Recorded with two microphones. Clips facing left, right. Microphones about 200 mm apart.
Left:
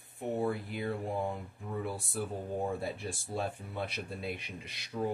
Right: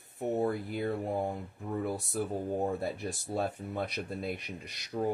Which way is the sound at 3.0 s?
45° right (ahead or behind).